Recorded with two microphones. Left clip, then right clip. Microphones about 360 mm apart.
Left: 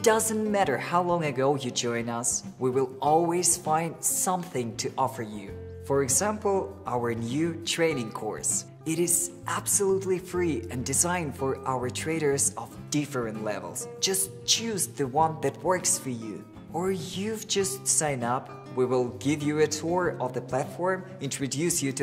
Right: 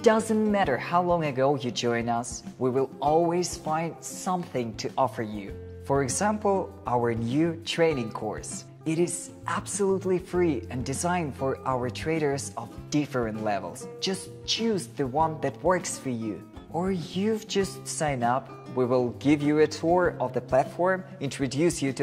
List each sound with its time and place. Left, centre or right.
0.0 s speech: right
14.0 s speech: right